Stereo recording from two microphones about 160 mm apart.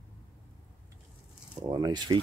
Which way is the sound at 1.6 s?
25° right (ahead or behind).